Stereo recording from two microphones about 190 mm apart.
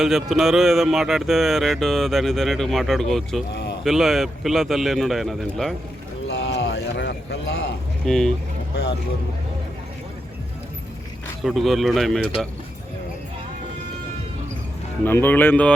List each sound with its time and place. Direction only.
0.0 s speech: centre (ahead or behind)
3.5 s a sound: 60° left (ahead or behind)
3.8 s speech: centre (ahead or behind)
6.2 s clip-clop: 65° left (ahead or behind)
8.0 s speech: 5° left (ahead or behind)
8.7 s speech: 60° left (ahead or behind)
11.4 s speech: centre (ahead or behind)
15.0 s speech: 10° left (ahead or behind)